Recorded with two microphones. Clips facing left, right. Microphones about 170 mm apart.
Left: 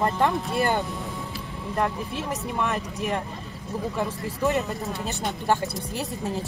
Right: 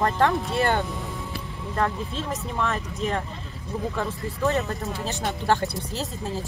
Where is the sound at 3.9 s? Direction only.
15° left (ahead or behind).